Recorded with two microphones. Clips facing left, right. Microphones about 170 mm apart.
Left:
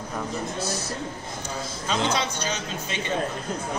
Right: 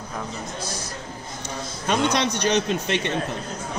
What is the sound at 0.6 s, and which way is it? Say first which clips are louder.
Speech: left 3 dB; 25° left (ahead or behind).